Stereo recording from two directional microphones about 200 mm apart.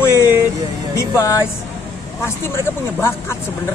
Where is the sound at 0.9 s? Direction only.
15° left (ahead or behind).